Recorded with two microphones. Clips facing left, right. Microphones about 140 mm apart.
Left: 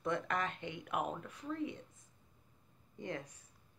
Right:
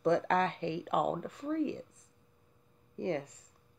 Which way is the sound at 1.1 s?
55° right (ahead or behind).